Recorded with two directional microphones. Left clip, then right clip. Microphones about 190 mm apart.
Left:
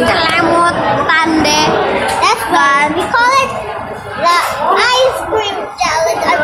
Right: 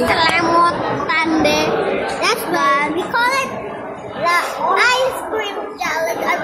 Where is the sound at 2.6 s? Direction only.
10° left (ahead or behind).